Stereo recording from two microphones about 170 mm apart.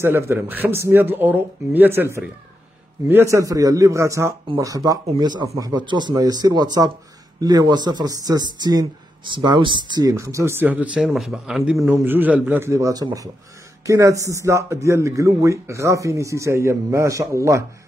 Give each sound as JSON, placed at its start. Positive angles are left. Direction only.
{"t": 0.0, "sound": "speech", "side_deg": -15}
{"t": 11.9, "sound": "speech", "side_deg": -10}